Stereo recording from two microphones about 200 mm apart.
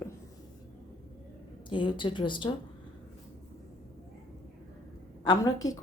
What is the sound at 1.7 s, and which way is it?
Speech, 25° left (ahead or behind).